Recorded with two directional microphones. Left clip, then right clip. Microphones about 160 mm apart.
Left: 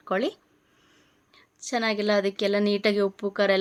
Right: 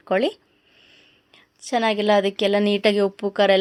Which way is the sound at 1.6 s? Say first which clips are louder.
Right 6 dB; 30° right (ahead or behind).